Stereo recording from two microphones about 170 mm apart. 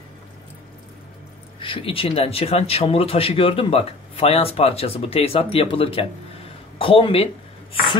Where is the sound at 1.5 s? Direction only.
30° left (ahead or behind).